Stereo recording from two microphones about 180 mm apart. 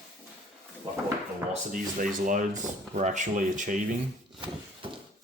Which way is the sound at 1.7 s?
50° right (ahead or behind).